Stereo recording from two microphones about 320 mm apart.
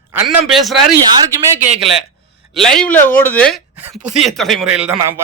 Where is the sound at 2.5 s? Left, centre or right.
Centre.